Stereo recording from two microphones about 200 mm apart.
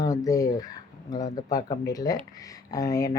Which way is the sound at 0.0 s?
15° left (ahead or behind).